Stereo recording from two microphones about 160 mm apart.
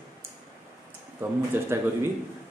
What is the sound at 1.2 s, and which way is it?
Speech, 15° right (ahead or behind).